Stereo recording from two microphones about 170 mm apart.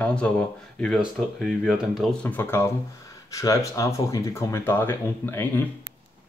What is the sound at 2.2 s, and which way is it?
Speech, 10° left (ahead or behind).